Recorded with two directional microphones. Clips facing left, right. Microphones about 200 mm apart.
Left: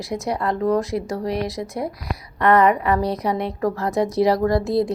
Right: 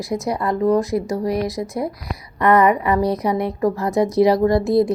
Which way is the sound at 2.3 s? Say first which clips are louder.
Right 1 dB; 10° right (ahead or behind).